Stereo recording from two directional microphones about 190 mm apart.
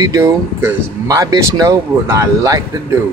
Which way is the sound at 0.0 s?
15° right (ahead or behind).